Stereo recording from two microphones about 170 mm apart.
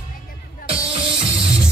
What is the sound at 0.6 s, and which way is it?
Music, 30° right (ahead or behind).